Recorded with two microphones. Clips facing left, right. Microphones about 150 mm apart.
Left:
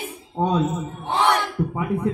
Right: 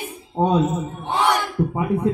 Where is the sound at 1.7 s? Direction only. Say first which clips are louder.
Right 3 dB; 25° right (ahead or behind).